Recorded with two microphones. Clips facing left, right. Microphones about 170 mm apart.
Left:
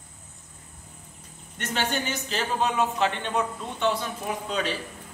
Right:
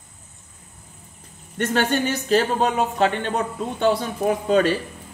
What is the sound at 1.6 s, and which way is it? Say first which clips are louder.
Speech: right 8 dB; 50° right (ahead or behind).